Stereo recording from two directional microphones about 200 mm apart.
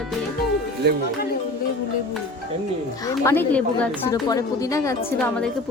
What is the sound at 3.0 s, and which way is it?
Speech, 10° left (ahead or behind).